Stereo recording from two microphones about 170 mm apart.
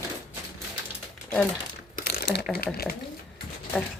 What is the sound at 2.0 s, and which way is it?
Crumpling, 65° left (ahead or behind).